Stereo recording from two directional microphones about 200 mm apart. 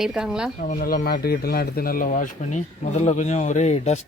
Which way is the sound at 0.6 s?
45° left (ahead or behind).